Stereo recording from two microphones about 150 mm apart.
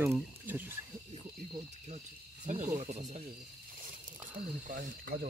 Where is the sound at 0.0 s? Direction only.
15° right (ahead or behind).